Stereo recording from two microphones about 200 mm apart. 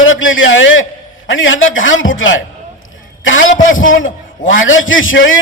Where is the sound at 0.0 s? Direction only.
75° left (ahead or behind).